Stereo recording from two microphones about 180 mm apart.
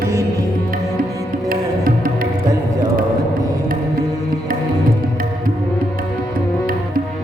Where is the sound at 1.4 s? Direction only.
55° right (ahead or behind).